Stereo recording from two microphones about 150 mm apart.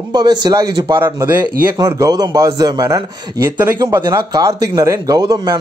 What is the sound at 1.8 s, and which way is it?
Speech, 25° right (ahead or behind).